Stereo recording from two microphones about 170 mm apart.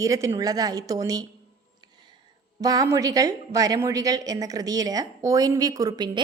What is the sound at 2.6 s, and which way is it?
A woman's voice, 20° right (ahead or behind).